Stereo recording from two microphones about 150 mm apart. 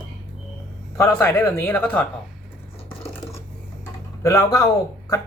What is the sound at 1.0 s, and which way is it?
Speech, 15° left (ahead or behind).